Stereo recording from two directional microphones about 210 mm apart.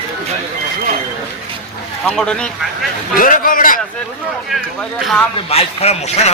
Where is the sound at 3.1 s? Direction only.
40° left (ahead or behind).